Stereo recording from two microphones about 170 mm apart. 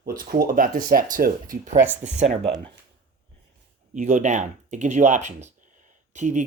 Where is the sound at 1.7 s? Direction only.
10° right (ahead or behind).